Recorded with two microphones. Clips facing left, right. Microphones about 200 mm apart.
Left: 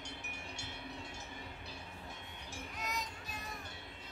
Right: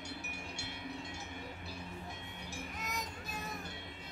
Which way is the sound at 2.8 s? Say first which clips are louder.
Left 3 dB; 45° right (ahead or behind).